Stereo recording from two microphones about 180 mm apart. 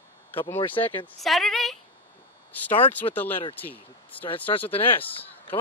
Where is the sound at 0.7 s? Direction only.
10° left (ahead or behind).